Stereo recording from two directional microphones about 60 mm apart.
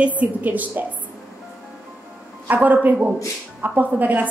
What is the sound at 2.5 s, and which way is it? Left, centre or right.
A woman's voice, right.